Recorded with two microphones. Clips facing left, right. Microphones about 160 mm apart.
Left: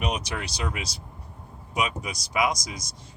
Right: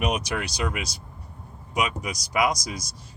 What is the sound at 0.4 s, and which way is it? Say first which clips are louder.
Speech: right 3 dB; 30° left (ahead or behind).